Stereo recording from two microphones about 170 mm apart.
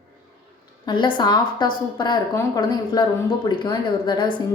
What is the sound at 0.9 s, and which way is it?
A woman's voice, 25° left (ahead or behind).